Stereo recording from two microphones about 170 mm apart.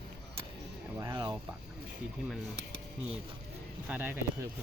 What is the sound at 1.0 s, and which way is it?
Speech, 20° right (ahead or behind).